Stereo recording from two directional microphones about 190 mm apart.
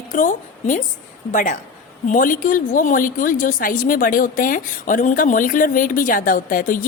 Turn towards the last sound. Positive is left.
turn(degrees=45)  # may be behind; listen again after turning